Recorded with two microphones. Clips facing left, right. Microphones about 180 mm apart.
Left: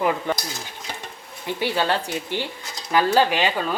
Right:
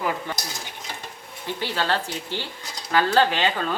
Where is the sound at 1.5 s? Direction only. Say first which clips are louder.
Left 3 dB; 15° left (ahead or behind).